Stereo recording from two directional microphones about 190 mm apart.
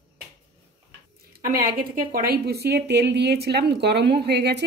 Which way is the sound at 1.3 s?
50° right (ahead or behind).